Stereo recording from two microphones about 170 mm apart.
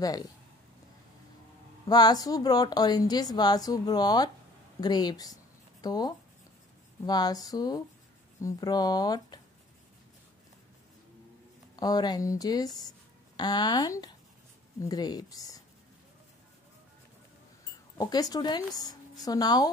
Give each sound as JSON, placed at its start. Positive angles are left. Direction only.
{"t": 0.0, "sound": "speech", "side_deg": 20}
{"t": 1.9, "sound": "speech", "side_deg": 25}
{"t": 11.7, "sound": "speech", "side_deg": 25}
{"t": 17.9, "sound": "speech", "side_deg": 20}